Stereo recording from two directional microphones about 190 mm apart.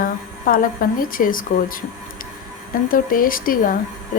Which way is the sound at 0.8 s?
50° left (ahead or behind).